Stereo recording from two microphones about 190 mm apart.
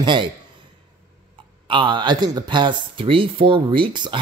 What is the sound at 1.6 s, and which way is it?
Speech, 25° right (ahead or behind).